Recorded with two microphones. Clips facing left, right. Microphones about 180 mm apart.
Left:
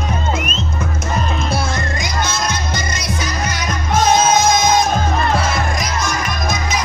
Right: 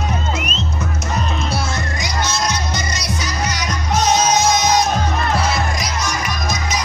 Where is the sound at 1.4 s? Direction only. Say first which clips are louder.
Left 2 dB; 55° left (ahead or behind).